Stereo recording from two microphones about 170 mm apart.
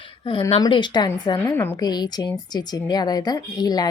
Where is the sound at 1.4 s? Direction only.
15° left (ahead or behind).